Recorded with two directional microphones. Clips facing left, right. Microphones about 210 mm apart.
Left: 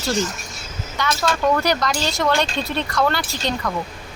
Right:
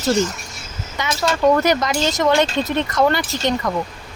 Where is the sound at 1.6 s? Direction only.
20° right (ahead or behind).